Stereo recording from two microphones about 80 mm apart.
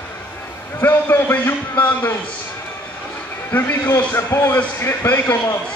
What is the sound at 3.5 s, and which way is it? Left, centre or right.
A man's voice, left.